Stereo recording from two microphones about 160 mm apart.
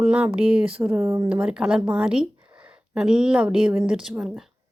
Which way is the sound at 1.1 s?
25° right (ahead or behind).